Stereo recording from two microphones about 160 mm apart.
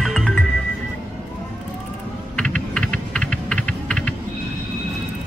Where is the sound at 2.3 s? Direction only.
5° left (ahead or behind).